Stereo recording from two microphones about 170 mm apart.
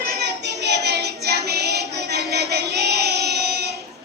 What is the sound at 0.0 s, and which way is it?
Child singing, 70° right (ahead or behind).